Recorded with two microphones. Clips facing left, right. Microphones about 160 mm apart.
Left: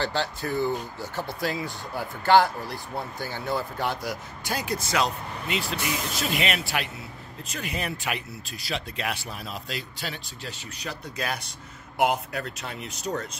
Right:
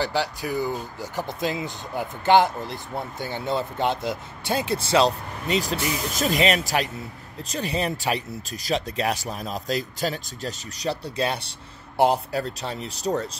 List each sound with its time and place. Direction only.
0.0 s speech: 15° right (ahead or behind); by 13.4 s 35° right (ahead or behind)